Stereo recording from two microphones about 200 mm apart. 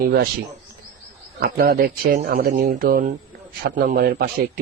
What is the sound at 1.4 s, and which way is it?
Speech, 50° right (ahead or behind).